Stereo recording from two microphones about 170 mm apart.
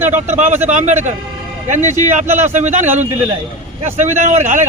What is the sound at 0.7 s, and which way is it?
Speech, 45° right (ahead or behind).